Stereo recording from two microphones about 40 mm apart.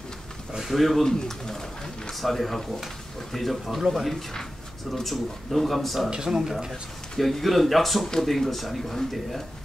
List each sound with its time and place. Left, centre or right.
0.5 s speech: centre
1.0 s speech: centre
2.1 s speech: centre
6.0 s speech: centre
6.7 s speech: centre